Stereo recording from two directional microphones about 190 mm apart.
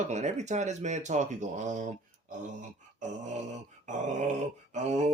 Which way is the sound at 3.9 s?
40° right (ahead or behind).